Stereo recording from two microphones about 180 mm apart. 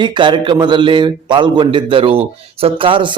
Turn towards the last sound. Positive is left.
turn(degrees=-30)  # may be behind; listen again after turning